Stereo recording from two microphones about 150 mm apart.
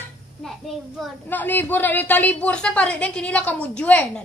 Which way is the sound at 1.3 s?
10° left (ahead or behind).